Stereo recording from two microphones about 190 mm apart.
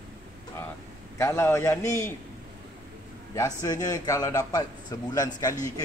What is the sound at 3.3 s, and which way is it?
A man's voice, 20° left (ahead or behind).